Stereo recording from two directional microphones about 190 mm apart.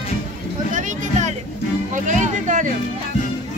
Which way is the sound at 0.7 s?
40° right (ahead or behind).